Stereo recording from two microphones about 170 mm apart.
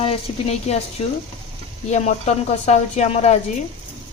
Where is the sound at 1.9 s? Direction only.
40° left (ahead or behind).